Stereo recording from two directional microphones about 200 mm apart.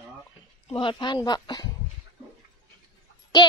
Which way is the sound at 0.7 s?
25° left (ahead or behind).